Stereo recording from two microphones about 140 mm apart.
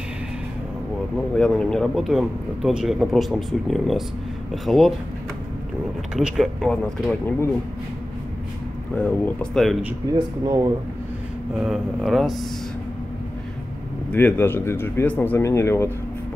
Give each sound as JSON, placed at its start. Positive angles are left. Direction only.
{"t": 1.1, "sound": "a man's voice", "side_deg": 5}
{"t": 6.1, "sound": "a man's voice", "side_deg": 0}
{"t": 8.9, "sound": "a man's voice", "side_deg": 10}
{"t": 10.1, "sound": "speech", "side_deg": -30}
{"t": 11.6, "sound": "a man's voice", "side_deg": 0}
{"t": 14.1, "sound": "speech", "side_deg": 10}